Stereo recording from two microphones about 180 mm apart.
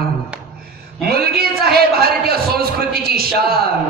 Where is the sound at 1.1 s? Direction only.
60° right (ahead or behind).